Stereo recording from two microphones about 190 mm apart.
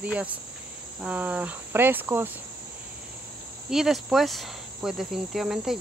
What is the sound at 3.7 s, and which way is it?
Cricket, centre (ahead or behind).